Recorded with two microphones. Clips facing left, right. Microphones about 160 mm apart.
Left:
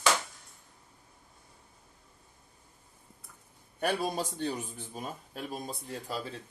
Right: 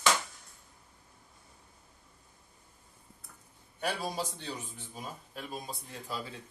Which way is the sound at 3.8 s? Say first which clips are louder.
Left 4 dB; 50° left (ahead or behind).